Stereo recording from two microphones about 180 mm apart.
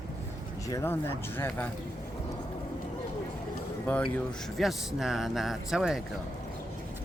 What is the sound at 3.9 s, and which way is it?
Speech, 5° left (ahead or behind).